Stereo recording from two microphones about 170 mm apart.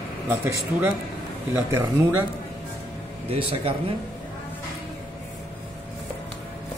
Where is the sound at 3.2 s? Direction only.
35° right (ahead or behind).